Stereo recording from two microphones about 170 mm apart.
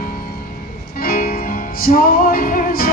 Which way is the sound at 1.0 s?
60° left (ahead or behind).